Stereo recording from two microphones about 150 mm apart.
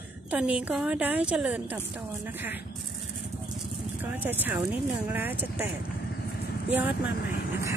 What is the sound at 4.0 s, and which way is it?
Speech, 10° right (ahead or behind).